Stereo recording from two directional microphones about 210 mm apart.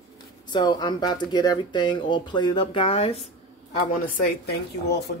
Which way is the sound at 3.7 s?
40° left (ahead or behind).